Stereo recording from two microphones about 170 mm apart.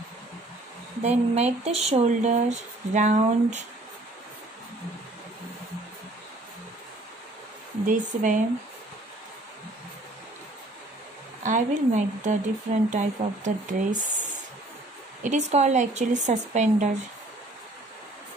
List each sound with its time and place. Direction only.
1.0 s speech: 40° right (ahead or behind)
7.8 s speech: 50° right (ahead or behind)
11.4 s speech: 45° right (ahead or behind)
15.2 s speech: 45° right (ahead or behind)